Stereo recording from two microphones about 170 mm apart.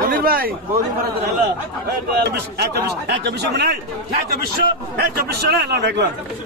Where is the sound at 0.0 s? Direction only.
60° right (ahead or behind).